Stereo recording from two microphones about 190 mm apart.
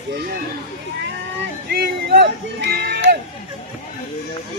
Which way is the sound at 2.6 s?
60° right (ahead or behind).